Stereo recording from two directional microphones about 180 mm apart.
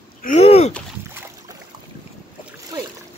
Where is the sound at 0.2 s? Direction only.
40° left (ahead or behind).